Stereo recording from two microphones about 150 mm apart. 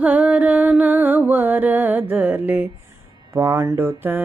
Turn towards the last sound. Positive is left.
turn(degrees=-15)  # may be behind; listen again after turning